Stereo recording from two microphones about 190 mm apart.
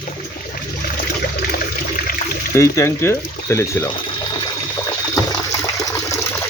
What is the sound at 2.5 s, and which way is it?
Speech, 15° left (ahead or behind).